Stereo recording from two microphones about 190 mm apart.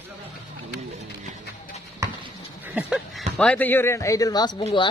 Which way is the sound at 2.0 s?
15° right (ahead or behind).